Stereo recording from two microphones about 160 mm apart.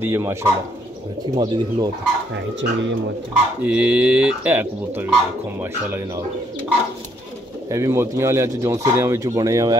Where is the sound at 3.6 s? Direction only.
10° right (ahead or behind).